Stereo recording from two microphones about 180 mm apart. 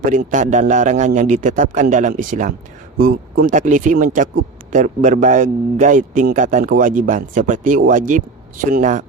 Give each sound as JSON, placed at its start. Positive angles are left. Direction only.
{"t": 0.0, "sound": "a man's voice", "side_deg": -50}